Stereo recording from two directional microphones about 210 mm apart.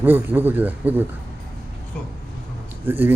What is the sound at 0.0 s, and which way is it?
Speech, 10° right (ahead or behind).